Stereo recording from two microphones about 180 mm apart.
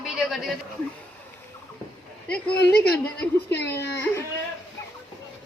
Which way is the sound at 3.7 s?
15° left (ahead or behind).